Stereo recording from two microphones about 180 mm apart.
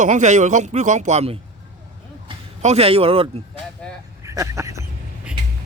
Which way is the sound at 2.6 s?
35° right (ahead or behind).